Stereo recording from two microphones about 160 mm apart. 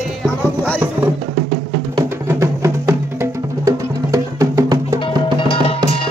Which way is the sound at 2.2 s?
20° right (ahead or behind).